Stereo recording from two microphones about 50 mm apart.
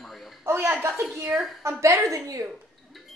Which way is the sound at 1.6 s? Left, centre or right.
Right.